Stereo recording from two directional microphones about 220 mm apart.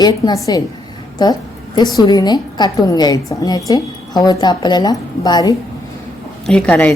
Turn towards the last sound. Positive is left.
turn(degrees=5)  # may be behind; listen again after turning